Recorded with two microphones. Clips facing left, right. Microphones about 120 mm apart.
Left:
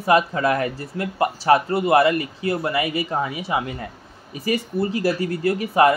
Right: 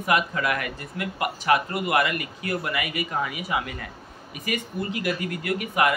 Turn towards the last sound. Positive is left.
turn(degrees=30)  # may be behind; listen again after turning